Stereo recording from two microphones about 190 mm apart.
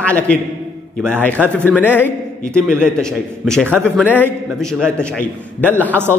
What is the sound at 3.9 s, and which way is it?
A man's voice, 10° left (ahead or behind).